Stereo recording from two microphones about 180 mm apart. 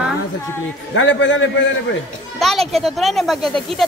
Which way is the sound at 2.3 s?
Centre (ahead or behind).